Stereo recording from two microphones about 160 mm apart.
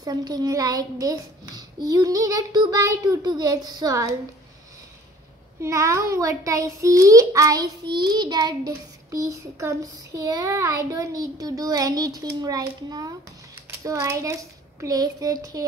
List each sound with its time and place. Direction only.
0.0 s a child's voice: 25° right (ahead or behind)
5.6 s a child's voice: 20° right (ahead or behind)